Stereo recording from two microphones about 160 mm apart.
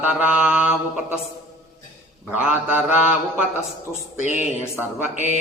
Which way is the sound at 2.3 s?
5° right (ahead or behind).